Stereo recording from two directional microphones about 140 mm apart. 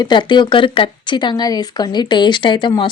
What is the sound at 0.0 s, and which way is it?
Speech, 35° left (ahead or behind).